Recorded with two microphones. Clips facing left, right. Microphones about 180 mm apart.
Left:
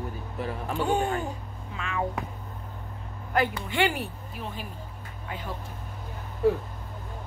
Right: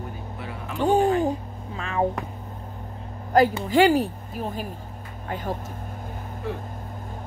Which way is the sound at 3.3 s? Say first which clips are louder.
Right 8 dB; 40° right (ahead or behind).